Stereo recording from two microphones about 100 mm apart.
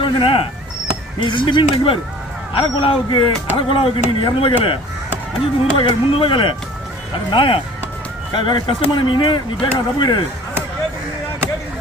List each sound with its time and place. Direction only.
0.0 s speech: 65° left (ahead or behind)
8.3 s speech: 50° left (ahead or behind)